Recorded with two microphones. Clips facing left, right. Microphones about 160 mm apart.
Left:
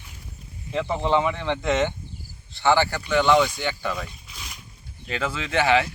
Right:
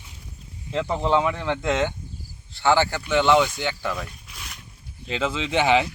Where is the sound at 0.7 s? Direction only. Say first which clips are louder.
Right 1 dB; 5° left (ahead or behind).